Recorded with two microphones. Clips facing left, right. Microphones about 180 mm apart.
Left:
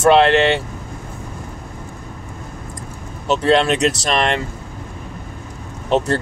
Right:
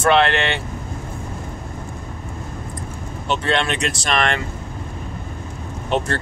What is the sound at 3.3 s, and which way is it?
Speech, 35° left (ahead or behind).